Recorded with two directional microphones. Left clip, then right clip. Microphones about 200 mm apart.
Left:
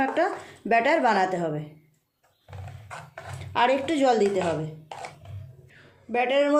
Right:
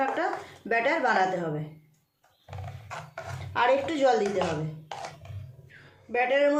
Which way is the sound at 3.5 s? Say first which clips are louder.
Left 2 dB; 45° left (ahead or behind).